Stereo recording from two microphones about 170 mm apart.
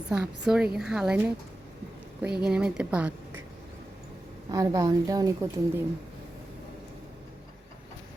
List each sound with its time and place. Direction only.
0.1 s a woman's voice: 5° right (ahead or behind)
2.4 s a woman's voice: 5° right (ahead or behind)
4.5 s a woman's voice: 20° right (ahead or behind)